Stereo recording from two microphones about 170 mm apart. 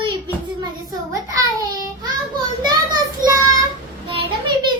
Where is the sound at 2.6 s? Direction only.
25° right (ahead or behind).